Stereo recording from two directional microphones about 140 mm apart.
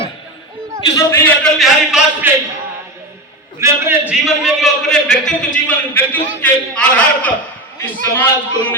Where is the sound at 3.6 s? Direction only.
20° right (ahead or behind).